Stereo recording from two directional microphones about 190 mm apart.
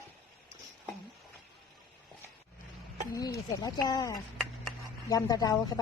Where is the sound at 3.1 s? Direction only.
20° left (ahead or behind).